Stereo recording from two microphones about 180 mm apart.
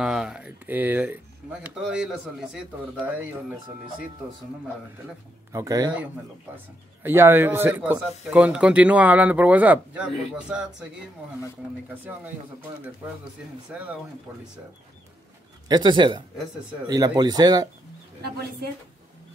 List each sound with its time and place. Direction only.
0.0 s speech: 5° right (ahead or behind)
5.5 s speech: 20° right (ahead or behind)
13.7 s speech: 5° right (ahead or behind)
15.7 s speech: 25° right (ahead or behind)